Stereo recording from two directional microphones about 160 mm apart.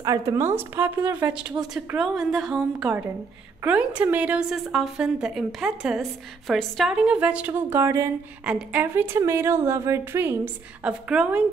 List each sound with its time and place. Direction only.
0.0 s a woman's voice: 20° right (ahead or behind)